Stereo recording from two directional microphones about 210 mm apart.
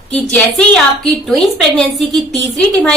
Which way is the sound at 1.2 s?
Centre (ahead or behind).